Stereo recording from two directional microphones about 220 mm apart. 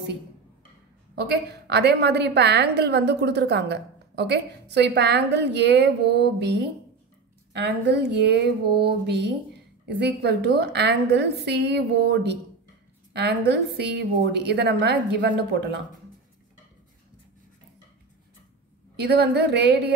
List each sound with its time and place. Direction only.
1.1 s a woman's voice: 50° right (ahead or behind)
18.9 s a woman's voice: 50° right (ahead or behind)